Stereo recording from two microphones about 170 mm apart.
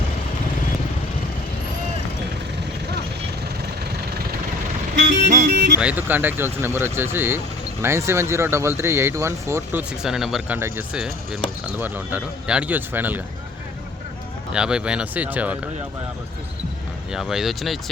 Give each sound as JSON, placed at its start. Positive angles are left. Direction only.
{"t": 4.9, "sound": "vehicle", "side_deg": -45}
{"t": 5.5, "sound": "music", "side_deg": -85}
{"t": 5.7, "sound": "speech", "side_deg": -10}
{"t": 10.0, "sound": "speech", "side_deg": -5}
{"t": 14.5, "sound": "speech", "side_deg": -5}
{"t": 17.1, "sound": "speech", "side_deg": 0}